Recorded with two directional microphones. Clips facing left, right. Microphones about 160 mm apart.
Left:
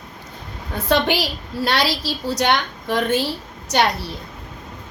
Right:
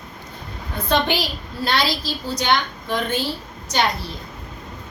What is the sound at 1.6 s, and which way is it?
A woman's voice, 80° left.